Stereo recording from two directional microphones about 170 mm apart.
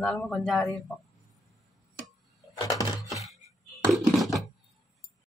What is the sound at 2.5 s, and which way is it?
Music, 20° left (ahead or behind).